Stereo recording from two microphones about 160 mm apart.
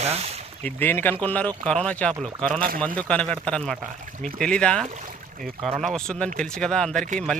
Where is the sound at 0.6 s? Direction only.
15° left (ahead or behind).